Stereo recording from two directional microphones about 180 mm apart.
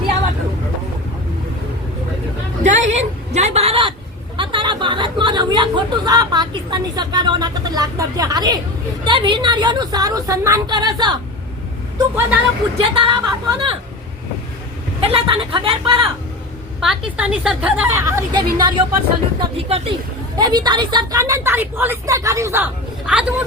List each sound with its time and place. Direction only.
2.6 s a sound: 40° right (ahead or behind)
4.4 s chatter: 25° right (ahead or behind)
9.0 s a woman's voice: 25° right (ahead or behind)
11.9 s a woman's voice: 15° right (ahead or behind)
12.8 s a woman's voice: 30° right (ahead or behind)
15.0 s a woman's voice: 30° right (ahead or behind)
16.8 s speech: 5° right (ahead or behind)
18.3 s a woman's voice: 25° right (ahead or behind)
20.3 s a woman's voice: 25° right (ahead or behind); by 23.2 s 5° right (ahead or behind)